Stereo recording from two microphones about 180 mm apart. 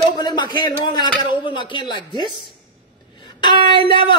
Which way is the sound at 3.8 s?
30° left (ahead or behind).